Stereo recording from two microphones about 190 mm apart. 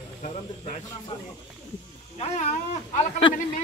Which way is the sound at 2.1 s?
35° left (ahead or behind).